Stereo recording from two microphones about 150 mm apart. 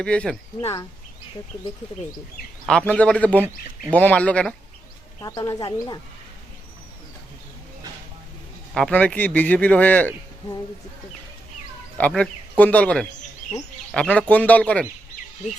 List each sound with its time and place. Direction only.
0.0 s speech: 5° left (ahead or behind)
2.6 s speech: 5° left (ahead or behind)
5.2 s speech: 25° left (ahead or behind)
8.7 s speech: 5° left (ahead or behind)
11.9 s speech: 10° left (ahead or behind)